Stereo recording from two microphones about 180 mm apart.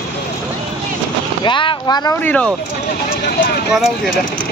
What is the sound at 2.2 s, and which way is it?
Speech, 5° left (ahead or behind).